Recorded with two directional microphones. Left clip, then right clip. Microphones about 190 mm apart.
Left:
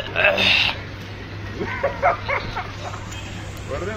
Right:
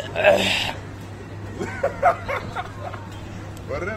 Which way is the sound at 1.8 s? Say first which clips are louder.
Right 1 dB; 30° right (ahead or behind).